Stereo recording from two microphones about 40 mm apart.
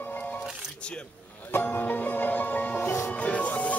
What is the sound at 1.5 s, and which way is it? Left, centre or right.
Music, left.